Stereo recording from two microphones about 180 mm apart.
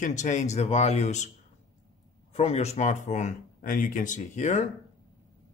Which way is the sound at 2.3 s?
35° left (ahead or behind).